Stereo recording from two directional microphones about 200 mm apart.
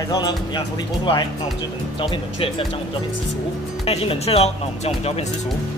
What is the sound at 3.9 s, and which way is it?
Speech, 30° left (ahead or behind).